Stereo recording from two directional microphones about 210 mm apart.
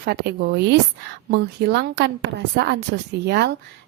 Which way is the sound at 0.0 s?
50° right (ahead or behind).